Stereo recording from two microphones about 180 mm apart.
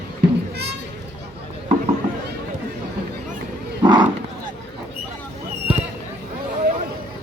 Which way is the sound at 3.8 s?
25° right (ahead or behind).